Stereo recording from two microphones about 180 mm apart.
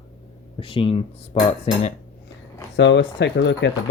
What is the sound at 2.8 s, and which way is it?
Speech, 75° left (ahead or behind).